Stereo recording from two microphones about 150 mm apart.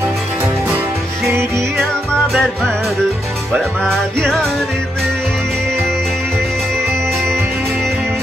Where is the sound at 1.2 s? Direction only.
20° right (ahead or behind).